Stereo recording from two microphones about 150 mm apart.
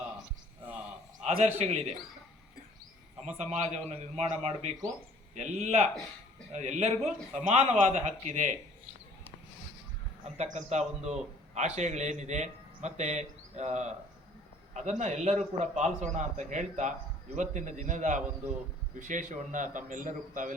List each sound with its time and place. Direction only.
1.2 s a man's voice: 45° right (ahead or behind)
3.2 s a man's voice: 45° right (ahead or behind)
10.3 s a man's voice: 45° right (ahead or behind)